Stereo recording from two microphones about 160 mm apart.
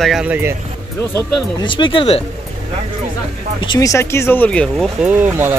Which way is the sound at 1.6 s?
30° left (ahead or behind).